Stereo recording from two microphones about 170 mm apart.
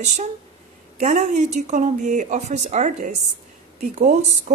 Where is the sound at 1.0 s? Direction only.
40° right (ahead or behind).